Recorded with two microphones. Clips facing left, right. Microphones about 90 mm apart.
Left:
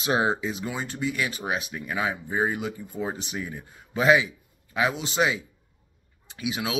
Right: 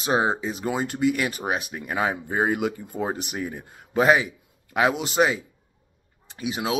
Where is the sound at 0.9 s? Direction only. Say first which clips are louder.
Right 5 dB; 60° right (ahead or behind).